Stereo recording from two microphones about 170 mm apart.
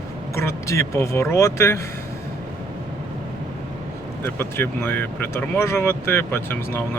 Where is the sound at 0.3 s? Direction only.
15° left (ahead or behind).